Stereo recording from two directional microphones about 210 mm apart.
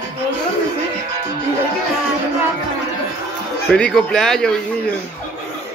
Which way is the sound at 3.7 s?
Centre (ahead or behind).